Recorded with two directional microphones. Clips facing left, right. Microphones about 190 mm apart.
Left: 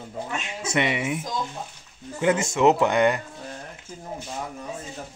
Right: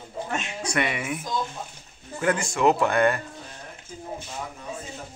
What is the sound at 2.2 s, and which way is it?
Speech, 20° left (ahead or behind).